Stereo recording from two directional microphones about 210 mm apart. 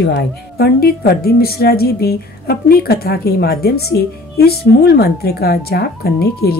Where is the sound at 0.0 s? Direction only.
55° left (ahead or behind).